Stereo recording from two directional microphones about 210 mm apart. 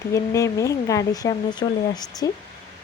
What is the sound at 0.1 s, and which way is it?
Speech, 15° left (ahead or behind).